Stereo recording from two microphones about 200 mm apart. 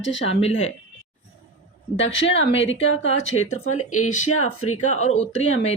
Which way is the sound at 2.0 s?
70° left (ahead or behind).